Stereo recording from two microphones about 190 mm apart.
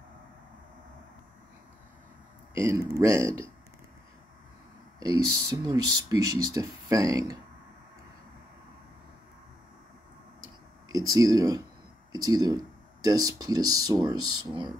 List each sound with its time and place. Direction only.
2.5 s speech: 15° right (ahead or behind)
5.5 s speech: 20° right (ahead or behind)
10.9 s speech: 20° right (ahead or behind)